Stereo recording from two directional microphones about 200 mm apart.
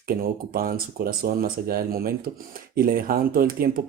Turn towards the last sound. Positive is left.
turn(degrees=-45)  # may be behind; listen again after turning